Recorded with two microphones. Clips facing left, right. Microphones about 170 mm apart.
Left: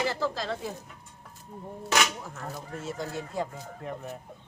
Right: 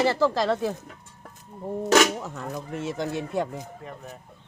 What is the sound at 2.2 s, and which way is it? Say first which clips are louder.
Speech: right 5 dB; 75° right (ahead or behind).